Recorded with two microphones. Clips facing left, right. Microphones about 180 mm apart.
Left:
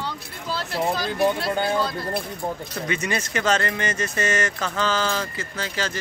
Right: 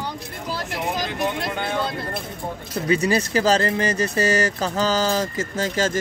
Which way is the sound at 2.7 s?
35° right (ahead or behind).